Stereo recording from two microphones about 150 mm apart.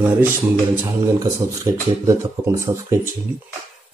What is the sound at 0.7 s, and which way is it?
Speech, 25° right (ahead or behind).